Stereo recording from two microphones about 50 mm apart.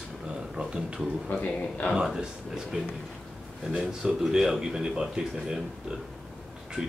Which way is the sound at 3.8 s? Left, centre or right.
Centre.